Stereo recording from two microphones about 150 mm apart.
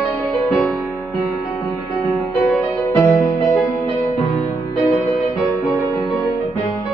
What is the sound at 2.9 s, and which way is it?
Music, 10° left (ahead or behind).